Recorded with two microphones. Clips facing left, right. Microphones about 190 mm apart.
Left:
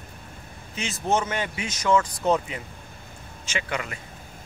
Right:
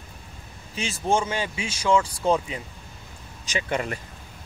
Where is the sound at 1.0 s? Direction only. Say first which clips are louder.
Right 1 dB; 10° right (ahead or behind).